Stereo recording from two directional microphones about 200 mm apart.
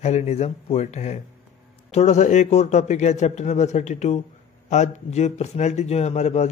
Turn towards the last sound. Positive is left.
turn(degrees=35)  # may be behind; listen again after turning